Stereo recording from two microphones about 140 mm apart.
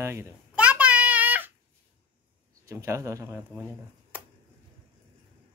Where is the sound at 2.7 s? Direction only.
20° right (ahead or behind).